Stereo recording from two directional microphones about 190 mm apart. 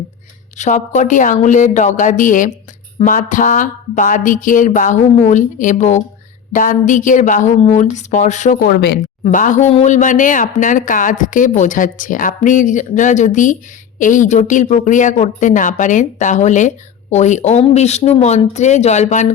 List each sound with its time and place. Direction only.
0.5 s a woman's voice: 40° left (ahead or behind)
8.7 s speech: 60° left (ahead or behind)
9.2 s a woman's voice: 40° left (ahead or behind)